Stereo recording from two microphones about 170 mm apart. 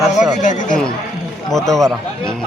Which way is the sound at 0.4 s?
45° left (ahead or behind).